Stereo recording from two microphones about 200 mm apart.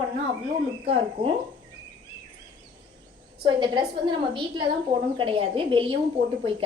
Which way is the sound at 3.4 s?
20° right (ahead or behind).